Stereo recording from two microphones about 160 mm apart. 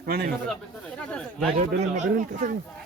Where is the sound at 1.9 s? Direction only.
50° right (ahead or behind).